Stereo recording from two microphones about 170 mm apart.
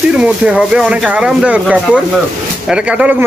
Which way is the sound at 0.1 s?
5° right (ahead or behind).